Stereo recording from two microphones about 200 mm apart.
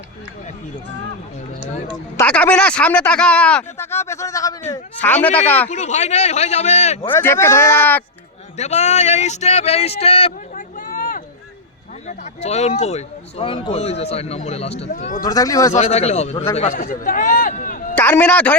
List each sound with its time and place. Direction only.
2.1 s speech: 5° left (ahead or behind)
5.6 s speech: 35° left (ahead or behind)
7.1 s speech: 10° left (ahead or behind)
8.5 s speech: 35° left (ahead or behind)
10.8 s a sound: 45° left (ahead or behind)
12.0 s speech: 35° left (ahead or behind)
15.2 s speech: 15° left (ahead or behind)
15.7 s a man's voice: 35° left (ahead or behind)
17.9 s a man's voice: 10° left (ahead or behind)